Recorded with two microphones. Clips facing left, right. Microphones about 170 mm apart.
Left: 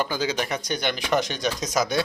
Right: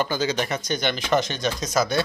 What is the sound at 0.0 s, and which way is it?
Speech, 10° left (ahead or behind).